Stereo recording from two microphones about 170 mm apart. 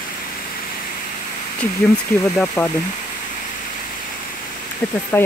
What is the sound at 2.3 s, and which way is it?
Speech, 10° left (ahead or behind).